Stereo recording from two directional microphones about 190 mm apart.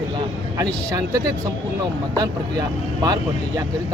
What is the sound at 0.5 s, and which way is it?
Speech, 20° right (ahead or behind).